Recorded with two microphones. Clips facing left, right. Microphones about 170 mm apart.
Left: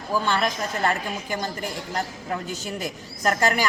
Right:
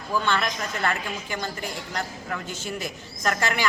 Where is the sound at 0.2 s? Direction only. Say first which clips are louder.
Left 1 dB; 35° left (ahead or behind).